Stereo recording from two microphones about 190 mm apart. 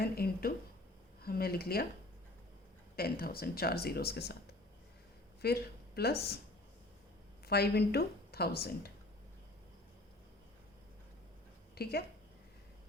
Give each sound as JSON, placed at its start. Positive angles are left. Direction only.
{"t": 0.0, "sound": "a sound", "side_deg": 55}
{"t": 2.9, "sound": "speech", "side_deg": 50}
{"t": 5.4, "sound": "speech", "side_deg": 55}
{"t": 7.4, "sound": "speech", "side_deg": 55}
{"t": 11.7, "sound": "a woman's voice", "side_deg": 55}